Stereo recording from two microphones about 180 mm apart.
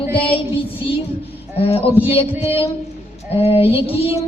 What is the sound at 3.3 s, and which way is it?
Speech, 35° left (ahead or behind).